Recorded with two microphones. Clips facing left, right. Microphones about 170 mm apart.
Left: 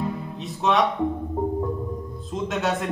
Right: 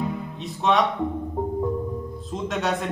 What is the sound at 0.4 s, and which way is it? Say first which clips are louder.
Speech: even; centre (ahead or behind).